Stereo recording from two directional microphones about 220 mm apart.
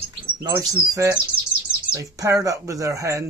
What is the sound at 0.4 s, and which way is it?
Speech, 15° right (ahead or behind).